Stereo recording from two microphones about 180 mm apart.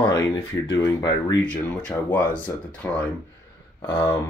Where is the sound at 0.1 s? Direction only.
20° left (ahead or behind).